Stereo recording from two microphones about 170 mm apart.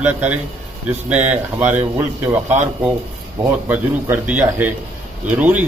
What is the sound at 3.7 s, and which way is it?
A man's voice, 10° right (ahead or behind).